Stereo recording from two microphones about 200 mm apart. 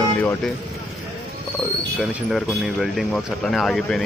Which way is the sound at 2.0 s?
Centre (ahead or behind).